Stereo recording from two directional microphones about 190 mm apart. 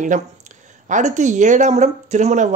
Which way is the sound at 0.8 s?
40° right (ahead or behind).